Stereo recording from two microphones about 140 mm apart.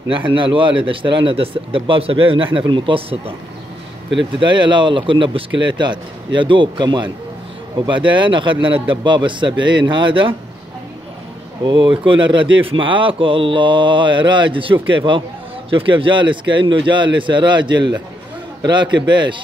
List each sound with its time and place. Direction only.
0.1 s speech: 35° right (ahead or behind)
4.4 s speech: 35° right (ahead or behind)
11.6 s speech: 35° right (ahead or behind)